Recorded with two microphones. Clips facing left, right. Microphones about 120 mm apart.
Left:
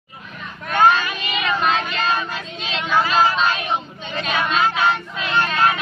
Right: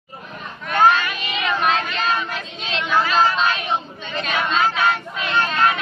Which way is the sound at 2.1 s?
5° left (ahead or behind).